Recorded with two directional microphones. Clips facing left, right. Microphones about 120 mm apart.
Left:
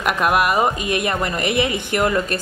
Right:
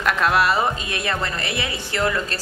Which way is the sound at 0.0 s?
15° left (ahead or behind).